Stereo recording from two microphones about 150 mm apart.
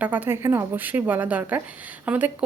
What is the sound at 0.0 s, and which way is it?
A woman's voice, 10° right (ahead or behind).